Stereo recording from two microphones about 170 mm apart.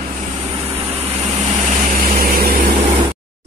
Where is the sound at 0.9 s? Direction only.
35° right (ahead or behind).